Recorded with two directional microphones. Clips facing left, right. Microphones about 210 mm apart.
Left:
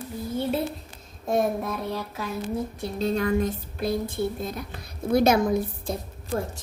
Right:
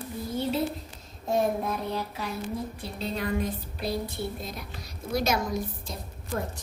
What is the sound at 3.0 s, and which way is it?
Speech, 45° left (ahead or behind).